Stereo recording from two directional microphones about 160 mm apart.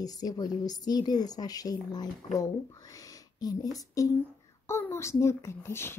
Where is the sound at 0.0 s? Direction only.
25° left (ahead or behind).